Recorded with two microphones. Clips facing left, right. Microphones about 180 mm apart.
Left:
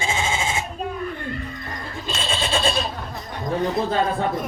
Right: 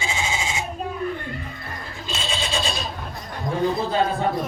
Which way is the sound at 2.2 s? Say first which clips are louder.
Left 3 dB; 55° left (ahead or behind).